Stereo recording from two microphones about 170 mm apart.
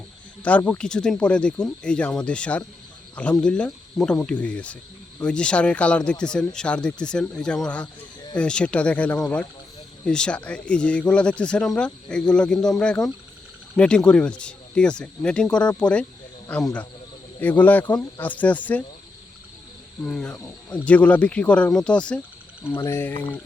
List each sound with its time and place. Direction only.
0.4 s speech: 10° left (ahead or behind)
20.1 s speech: 5° left (ahead or behind)